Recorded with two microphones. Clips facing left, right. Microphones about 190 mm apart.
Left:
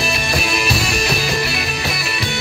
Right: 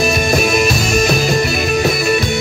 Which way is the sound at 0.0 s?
45° right (ahead or behind).